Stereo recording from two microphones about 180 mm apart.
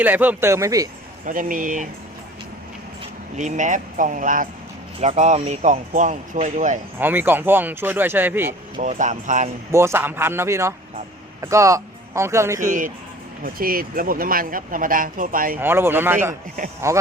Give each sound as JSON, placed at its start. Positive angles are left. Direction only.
{"t": 0.0, "sound": "speech", "side_deg": -10}
{"t": 1.2, "sound": "speech", "side_deg": -50}
{"t": 3.3, "sound": "speech", "side_deg": -40}
{"t": 7.0, "sound": "speech", "side_deg": -10}
{"t": 8.8, "sound": "speech", "side_deg": -40}
{"t": 9.7, "sound": "speech", "side_deg": -15}
{"t": 12.6, "sound": "speech", "side_deg": -50}
{"t": 15.6, "sound": "speech", "side_deg": -10}